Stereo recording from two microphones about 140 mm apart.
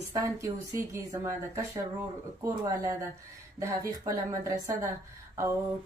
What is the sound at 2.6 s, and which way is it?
A woman's voice, 25° right (ahead or behind).